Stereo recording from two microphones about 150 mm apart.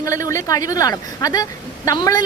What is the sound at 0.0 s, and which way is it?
A woman's voice, 20° left (ahead or behind).